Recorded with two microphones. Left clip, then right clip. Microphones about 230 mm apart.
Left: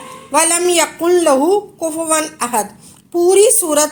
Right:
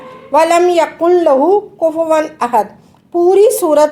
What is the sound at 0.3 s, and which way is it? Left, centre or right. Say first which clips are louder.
A woman's voice: right 5 dB; left.